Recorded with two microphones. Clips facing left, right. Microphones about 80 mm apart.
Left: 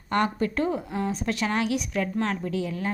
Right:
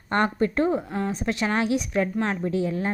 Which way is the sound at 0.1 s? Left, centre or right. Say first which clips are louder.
Right 2 dB; right.